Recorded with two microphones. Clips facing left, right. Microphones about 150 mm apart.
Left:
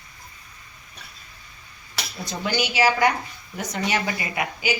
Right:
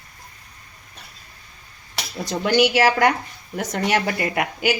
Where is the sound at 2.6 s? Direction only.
70° right (ahead or behind).